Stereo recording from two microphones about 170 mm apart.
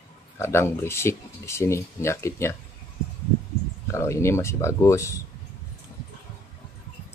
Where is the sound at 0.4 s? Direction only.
15° left (ahead or behind).